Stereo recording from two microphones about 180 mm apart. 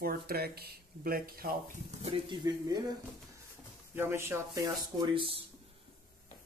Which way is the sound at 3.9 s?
15° right (ahead or behind).